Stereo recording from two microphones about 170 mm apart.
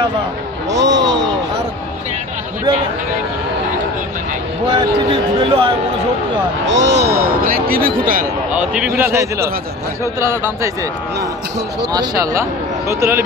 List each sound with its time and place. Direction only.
0.7 s a sound: 90° right
5.1 s speech: 30° right (ahead or behind)
6.6 s speech: 90° right
7.2 s speech: 60° right (ahead or behind)
8.5 s a man's voice: 10° right (ahead or behind)
11.9 s speech: 20° right (ahead or behind)